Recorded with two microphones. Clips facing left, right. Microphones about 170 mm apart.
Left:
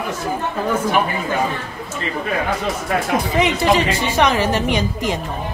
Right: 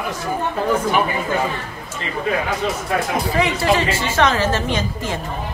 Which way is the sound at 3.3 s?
20° left (ahead or behind).